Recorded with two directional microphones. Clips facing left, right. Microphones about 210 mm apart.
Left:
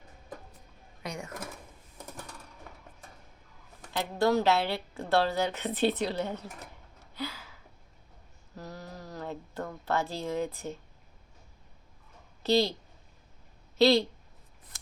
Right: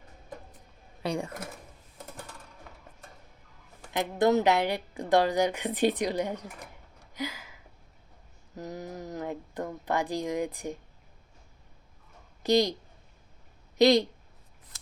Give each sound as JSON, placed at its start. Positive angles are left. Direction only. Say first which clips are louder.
{"t": 1.0, "sound": "speech", "louder": "right 8 dB", "side_deg": -30}
{"t": 3.9, "sound": "a woman's voice", "louder": "right 2 dB", "side_deg": -20}
{"t": 7.0, "sound": "a sound", "louder": "right 2 dB", "side_deg": -15}
{"t": 12.4, "sound": "speech", "louder": "right 2 dB", "side_deg": -15}
{"t": 13.7, "sound": "a woman's voice", "louder": "right 2 dB", "side_deg": -15}